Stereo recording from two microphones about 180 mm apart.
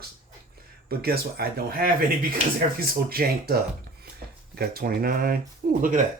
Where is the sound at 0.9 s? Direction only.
60° right (ahead or behind).